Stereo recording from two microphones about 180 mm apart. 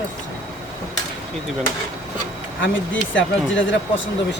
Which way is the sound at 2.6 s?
90° left.